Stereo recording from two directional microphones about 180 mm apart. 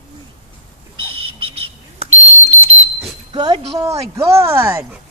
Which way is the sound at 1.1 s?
30° right (ahead or behind).